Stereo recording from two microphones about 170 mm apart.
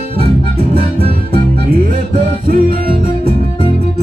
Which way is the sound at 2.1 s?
60° right (ahead or behind).